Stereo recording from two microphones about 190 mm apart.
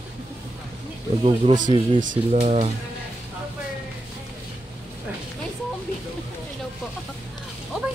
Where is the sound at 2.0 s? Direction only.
40° right (ahead or behind).